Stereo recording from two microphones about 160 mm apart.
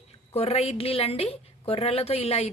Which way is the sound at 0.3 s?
40° left (ahead or behind).